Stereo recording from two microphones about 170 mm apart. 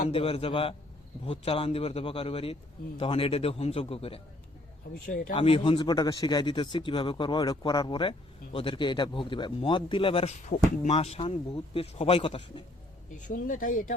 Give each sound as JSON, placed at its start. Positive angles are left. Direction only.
{"t": 0.1, "sound": "a man's voice", "side_deg": 35}
{"t": 5.0, "sound": "speech", "side_deg": 55}
{"t": 5.3, "sound": "a man's voice", "side_deg": 30}
{"t": 13.1, "sound": "speech", "side_deg": 50}